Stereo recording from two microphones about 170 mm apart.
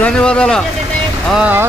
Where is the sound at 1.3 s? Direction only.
10° right (ahead or behind).